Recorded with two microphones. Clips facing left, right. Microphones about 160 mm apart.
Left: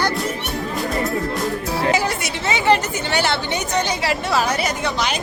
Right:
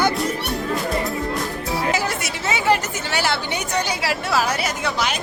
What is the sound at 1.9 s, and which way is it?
Speech, centre (ahead or behind).